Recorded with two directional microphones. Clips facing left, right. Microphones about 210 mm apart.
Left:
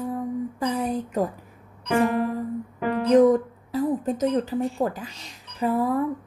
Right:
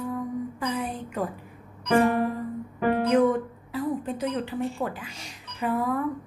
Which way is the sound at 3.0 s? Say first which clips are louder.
Left 7 dB; 35° left (ahead or behind).